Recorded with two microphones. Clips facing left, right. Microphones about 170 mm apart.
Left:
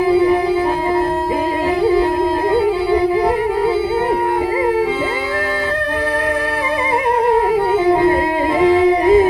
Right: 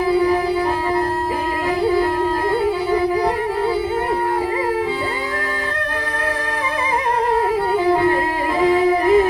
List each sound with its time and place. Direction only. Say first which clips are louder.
2.5 s music: left 5 dB; 25° left (ahead or behind)
7.3 s music: left 4 dB; 25° left (ahead or behind)